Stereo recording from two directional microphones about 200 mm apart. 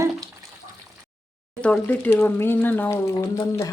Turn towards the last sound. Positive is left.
turn(degrees=15)  # may be behind; listen again after turning